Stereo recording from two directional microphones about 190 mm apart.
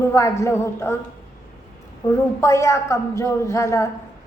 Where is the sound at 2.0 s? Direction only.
15° left (ahead or behind).